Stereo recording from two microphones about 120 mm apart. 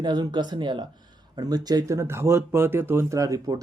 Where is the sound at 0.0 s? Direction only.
35° right (ahead or behind).